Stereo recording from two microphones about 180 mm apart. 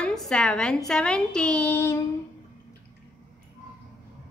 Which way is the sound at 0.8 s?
5° left (ahead or behind).